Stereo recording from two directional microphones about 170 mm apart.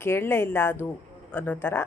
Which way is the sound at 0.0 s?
15° left (ahead or behind).